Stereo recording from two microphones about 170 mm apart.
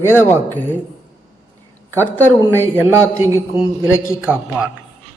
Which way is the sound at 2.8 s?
15° right (ahead or behind).